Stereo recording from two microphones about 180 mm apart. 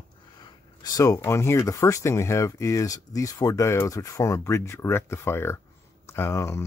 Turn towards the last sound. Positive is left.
turn(degrees=15)  # may be behind; listen again after turning